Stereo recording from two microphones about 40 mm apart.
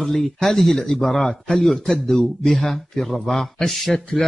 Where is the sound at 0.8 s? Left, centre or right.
Centre.